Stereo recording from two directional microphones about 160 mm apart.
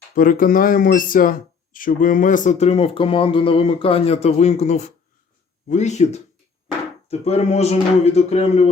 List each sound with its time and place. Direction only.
0.1 s speech: 60° left (ahead or behind); by 8.7 s 40° left (ahead or behind)